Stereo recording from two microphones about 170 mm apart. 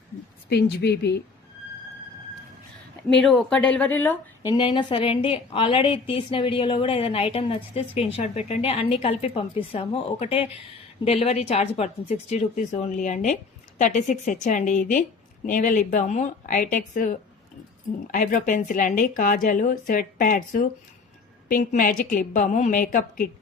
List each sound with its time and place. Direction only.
0.5 s a woman's voice: 75° left (ahead or behind)
3.1 s speech: centre (ahead or behind)
4.5 s a woman's voice: 30° left (ahead or behind); by 23.3 s 55° left (ahead or behind)